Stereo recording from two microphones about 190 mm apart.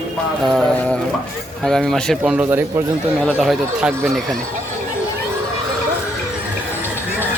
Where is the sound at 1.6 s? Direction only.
Centre (ahead or behind).